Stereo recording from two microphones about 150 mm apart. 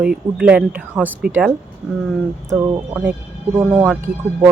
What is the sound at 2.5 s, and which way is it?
Speech, 20° right (ahead or behind).